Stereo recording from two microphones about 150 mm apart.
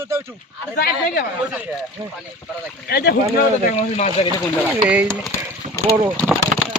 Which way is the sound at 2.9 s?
90° left.